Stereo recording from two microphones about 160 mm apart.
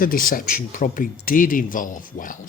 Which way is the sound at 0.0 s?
60° left (ahead or behind).